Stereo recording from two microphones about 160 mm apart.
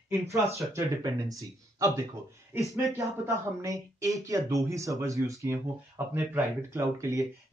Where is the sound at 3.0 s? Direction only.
20° right (ahead or behind).